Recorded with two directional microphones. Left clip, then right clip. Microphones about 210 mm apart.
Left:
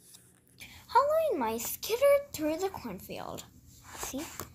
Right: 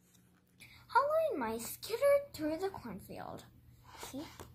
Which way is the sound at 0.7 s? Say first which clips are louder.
Left 5 dB; 30° left (ahead or behind).